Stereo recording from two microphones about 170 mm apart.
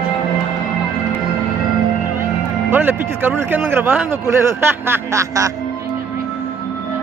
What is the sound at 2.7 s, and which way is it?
Speech, 10° right (ahead or behind).